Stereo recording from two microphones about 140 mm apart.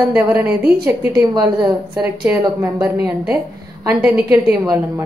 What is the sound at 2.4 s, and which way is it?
Speech, 25° right (ahead or behind).